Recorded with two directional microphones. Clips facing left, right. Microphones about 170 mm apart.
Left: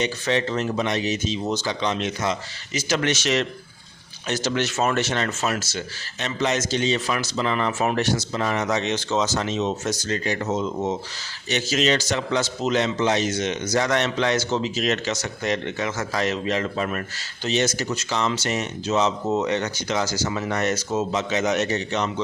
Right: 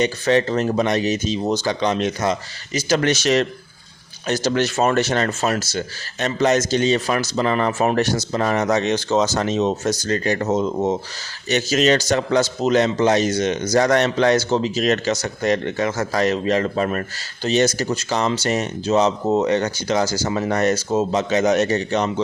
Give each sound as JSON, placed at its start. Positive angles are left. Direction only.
{"t": 0.0, "sound": "speech", "side_deg": -45}